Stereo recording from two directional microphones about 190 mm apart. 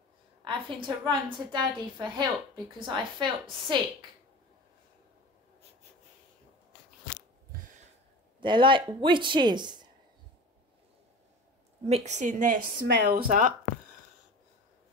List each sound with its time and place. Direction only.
0.4 s a woman's voice: 25° right (ahead or behind)
8.4 s a woman's voice: 25° right (ahead or behind)
11.9 s a woman's voice: 35° right (ahead or behind)
12.8 s speech: 60° right (ahead or behind)